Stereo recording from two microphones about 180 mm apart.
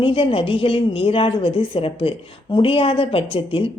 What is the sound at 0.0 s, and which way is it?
A woman's voice, 30° left (ahead or behind).